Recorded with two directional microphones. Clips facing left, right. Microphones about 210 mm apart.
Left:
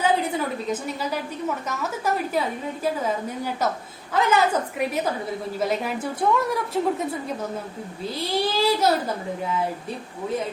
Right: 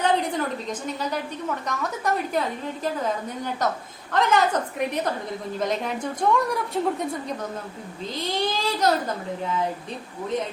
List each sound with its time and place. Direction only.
0.0 s a woman's voice: 5° left (ahead or behind)